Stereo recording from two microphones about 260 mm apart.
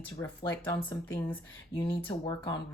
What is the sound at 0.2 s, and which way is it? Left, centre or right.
Speech, centre.